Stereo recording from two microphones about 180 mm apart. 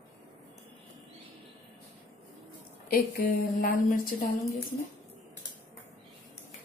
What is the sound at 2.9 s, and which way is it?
A woman's voice, 55° left (ahead or behind).